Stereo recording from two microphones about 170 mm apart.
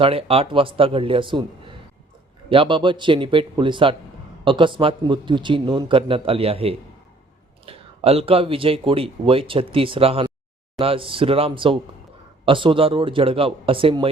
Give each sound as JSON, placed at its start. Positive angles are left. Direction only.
{"t": 0.0, "sound": "a man's voice", "side_deg": -35}